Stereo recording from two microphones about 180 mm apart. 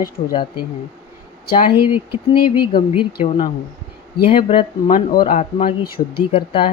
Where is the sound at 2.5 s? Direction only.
25° left (ahead or behind).